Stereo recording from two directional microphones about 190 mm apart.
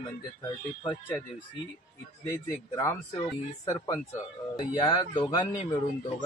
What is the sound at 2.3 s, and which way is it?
Speech, 15° left (ahead or behind).